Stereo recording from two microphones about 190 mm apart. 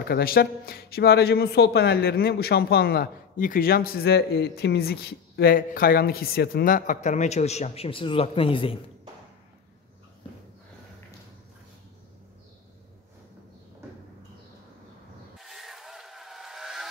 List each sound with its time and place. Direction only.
0.1 s a man's voice: 50° left (ahead or behind); by 8.7 s 30° left (ahead or behind)
15.3 s vehicle: centre (ahead or behind)